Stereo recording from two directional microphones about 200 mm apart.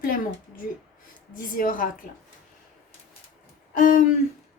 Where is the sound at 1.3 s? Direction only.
45° left (ahead or behind).